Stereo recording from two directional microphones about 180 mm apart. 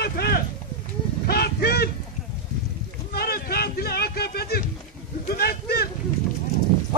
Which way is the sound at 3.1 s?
60° left (ahead or behind).